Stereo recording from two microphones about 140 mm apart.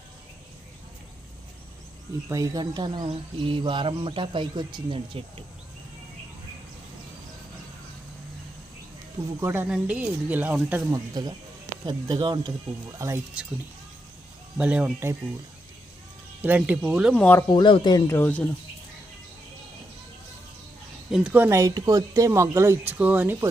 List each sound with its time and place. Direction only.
2.3 s speech: 25° right (ahead or behind)
9.4 s speech: 15° right (ahead or behind)
10.9 s speech: 30° right (ahead or behind)
13.0 s speech: 20° right (ahead or behind)
14.6 s speech: 10° right (ahead or behind)
16.4 s speech: 10° right (ahead or behind)
17.2 s speech: 10° left (ahead or behind)
17.5 s speech: 35° left (ahead or behind)
18.1 s speech: 15° left (ahead or behind)
21.1 s speech: 10° right (ahead or behind)